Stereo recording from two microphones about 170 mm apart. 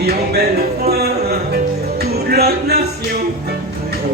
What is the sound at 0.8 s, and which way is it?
Music, 65° right (ahead or behind).